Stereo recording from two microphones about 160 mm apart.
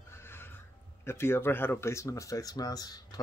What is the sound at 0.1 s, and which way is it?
Neigh, 15° left (ahead or behind).